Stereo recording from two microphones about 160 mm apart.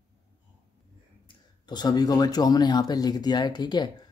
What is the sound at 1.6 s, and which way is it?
Speech, 25° left (ahead or behind).